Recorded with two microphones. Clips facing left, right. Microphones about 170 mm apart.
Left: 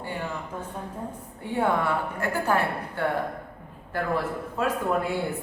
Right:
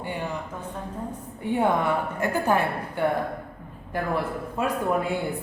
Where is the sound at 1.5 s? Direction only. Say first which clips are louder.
Right 1 dB; 20° right (ahead or behind).